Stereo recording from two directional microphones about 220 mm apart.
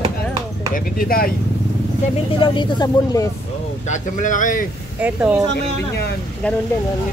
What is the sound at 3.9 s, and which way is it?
Speech, 35° left (ahead or behind).